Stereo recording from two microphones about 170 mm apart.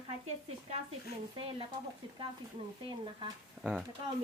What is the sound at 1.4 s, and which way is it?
Speech, 35° right (ahead or behind).